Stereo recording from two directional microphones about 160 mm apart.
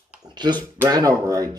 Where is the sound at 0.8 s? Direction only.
20° right (ahead or behind).